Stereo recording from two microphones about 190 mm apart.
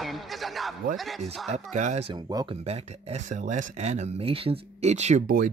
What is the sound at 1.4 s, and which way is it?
Speech, 35° right (ahead or behind).